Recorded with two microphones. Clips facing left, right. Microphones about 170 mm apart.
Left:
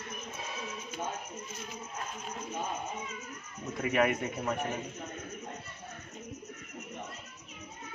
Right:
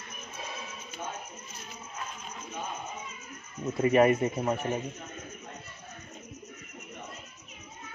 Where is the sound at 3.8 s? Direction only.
30° right (ahead or behind).